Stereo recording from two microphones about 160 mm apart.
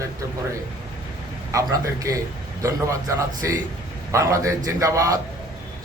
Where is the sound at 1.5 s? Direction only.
20° right (ahead or behind).